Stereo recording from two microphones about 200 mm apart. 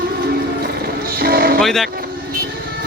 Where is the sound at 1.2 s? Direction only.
45° right (ahead or behind).